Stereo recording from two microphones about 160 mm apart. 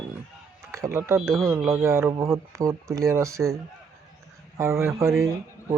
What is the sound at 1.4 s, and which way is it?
Speech, 10° right (ahead or behind).